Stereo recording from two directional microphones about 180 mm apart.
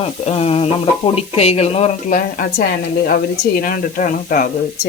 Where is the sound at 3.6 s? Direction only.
50° left (ahead or behind).